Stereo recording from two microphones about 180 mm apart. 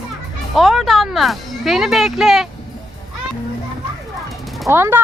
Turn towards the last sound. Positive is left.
turn(degrees=-15)  # may be behind; listen again after turning